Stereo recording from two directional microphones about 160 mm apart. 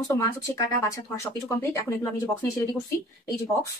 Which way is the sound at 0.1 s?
20° left (ahead or behind).